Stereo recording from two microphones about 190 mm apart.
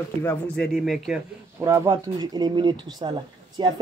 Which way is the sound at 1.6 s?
15° right (ahead or behind).